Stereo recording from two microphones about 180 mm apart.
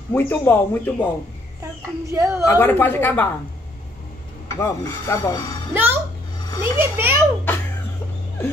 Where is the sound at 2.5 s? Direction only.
15° left (ahead or behind).